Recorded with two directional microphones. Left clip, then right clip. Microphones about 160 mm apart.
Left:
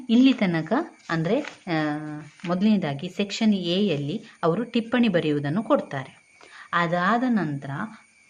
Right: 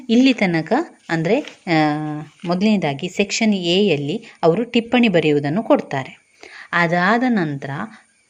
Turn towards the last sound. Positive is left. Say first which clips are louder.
# right 6 dB
turn(degrees=-35)  # may be behind; listen again after turning